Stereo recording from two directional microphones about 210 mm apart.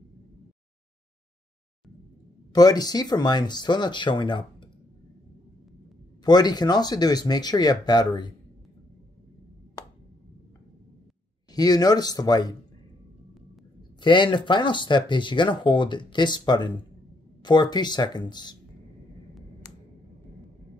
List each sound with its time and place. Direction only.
2.5 s speech: 20° left (ahead or behind)
6.2 s speech: 20° left (ahead or behind)
11.5 s speech: 20° left (ahead or behind)
14.0 s speech: 20° left (ahead or behind)